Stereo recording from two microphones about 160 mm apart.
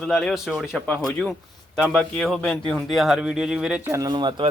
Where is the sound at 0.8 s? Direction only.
10° left (ahead or behind).